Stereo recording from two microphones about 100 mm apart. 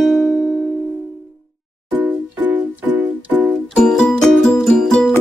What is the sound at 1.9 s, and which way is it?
Music, 15° right (ahead or behind).